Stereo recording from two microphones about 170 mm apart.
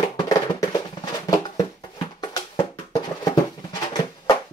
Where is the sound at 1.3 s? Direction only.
25° left (ahead or behind).